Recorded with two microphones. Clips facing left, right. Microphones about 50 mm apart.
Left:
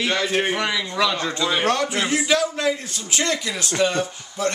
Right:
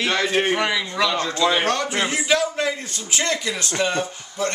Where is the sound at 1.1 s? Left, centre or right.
Centre.